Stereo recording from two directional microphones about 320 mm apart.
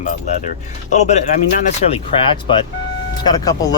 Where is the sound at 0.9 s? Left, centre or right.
Left.